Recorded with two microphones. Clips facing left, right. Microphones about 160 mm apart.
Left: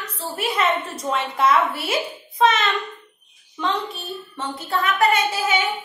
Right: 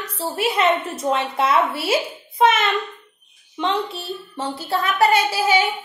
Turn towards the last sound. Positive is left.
turn(degrees=-30)  # may be behind; listen again after turning